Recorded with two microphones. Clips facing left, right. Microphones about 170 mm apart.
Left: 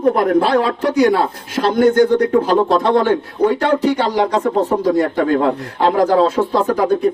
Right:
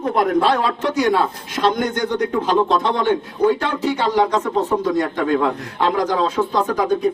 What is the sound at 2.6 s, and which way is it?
Speech, 55° left (ahead or behind).